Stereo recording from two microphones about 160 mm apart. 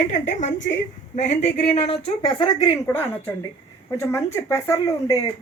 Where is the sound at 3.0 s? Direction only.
15° left (ahead or behind).